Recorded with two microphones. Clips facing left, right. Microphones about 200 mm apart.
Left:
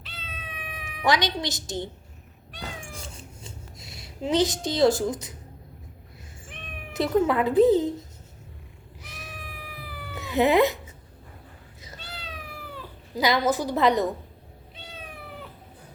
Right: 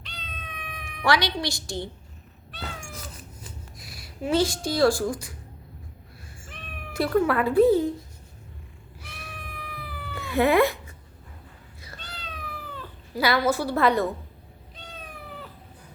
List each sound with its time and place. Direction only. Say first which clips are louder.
0.0 s cat: even; 5° left (ahead or behind)
1.0 s speech: even; 20° left (ahead or behind)
2.5 s cat: even; 15° left (ahead or behind)
2.9 s cat: even; 25° left (ahead or behind)
6.9 s speech: even; 20° left (ahead or behind)
9.0 s cat: even; 20° left (ahead or behind)
9.4 s cat: right 1 dB; 5° left (ahead or behind)
10.2 s a sound: even; 20° left (ahead or behind)
11.9 s cat: left 1 dB; 10° left (ahead or behind)